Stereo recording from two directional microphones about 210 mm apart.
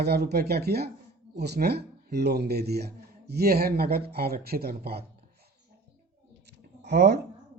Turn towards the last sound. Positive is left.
turn(degrees=-50)  # may be behind; listen again after turning